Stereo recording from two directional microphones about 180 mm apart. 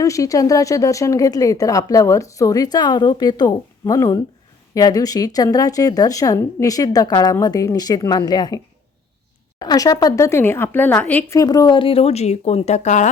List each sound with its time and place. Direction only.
0.0 s speech: 20° left (ahead or behind); by 13.1 s 40° left (ahead or behind)